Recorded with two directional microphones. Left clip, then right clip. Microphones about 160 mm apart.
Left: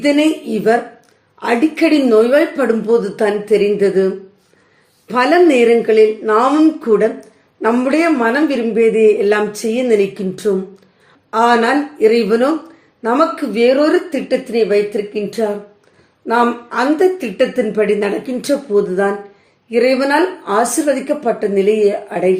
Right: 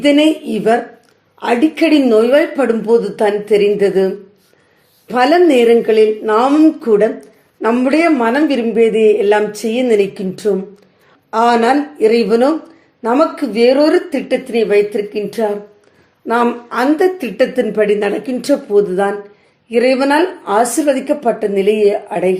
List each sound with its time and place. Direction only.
0.0 s a woman's voice: 25° right (ahead or behind)